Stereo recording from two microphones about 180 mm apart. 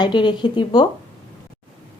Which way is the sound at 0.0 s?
25° left (ahead or behind).